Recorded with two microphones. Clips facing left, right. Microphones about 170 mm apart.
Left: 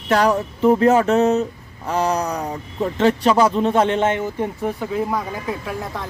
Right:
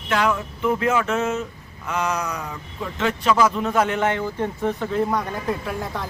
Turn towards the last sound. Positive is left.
turn(degrees=0)  # may be behind; listen again after turning